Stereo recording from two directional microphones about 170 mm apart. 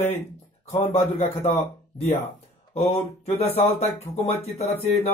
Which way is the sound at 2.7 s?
35° left (ahead or behind).